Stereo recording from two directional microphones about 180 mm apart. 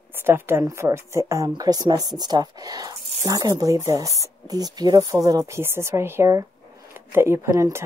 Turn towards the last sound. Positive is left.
turn(degrees=-15)  # may be behind; listen again after turning